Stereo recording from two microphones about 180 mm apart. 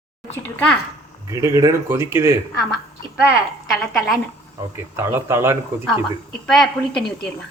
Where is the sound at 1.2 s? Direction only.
20° right (ahead or behind).